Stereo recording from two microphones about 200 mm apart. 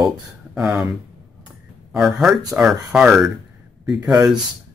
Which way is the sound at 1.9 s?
Centre (ahead or behind).